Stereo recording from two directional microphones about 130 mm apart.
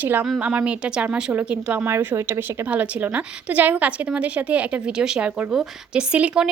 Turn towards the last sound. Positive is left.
turn(degrees=-10)  # may be behind; listen again after turning